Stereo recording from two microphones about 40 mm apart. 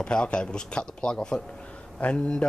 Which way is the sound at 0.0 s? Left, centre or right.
Left.